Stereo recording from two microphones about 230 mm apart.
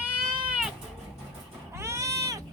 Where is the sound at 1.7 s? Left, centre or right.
Centre.